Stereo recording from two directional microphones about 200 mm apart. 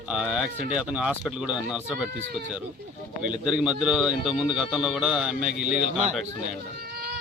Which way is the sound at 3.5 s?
5° right (ahead or behind).